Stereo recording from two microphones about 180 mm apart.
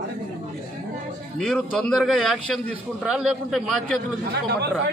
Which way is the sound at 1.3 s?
5° left (ahead or behind).